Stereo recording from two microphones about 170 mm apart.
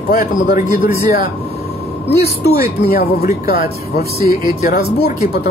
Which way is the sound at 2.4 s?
65° left (ahead or behind).